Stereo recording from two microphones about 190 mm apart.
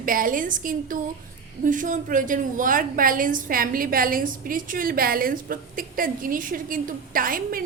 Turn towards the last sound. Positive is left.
turn(degrees=-50)  # may be behind; listen again after turning